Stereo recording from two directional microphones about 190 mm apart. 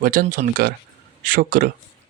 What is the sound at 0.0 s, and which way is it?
Speech, 45° right (ahead or behind).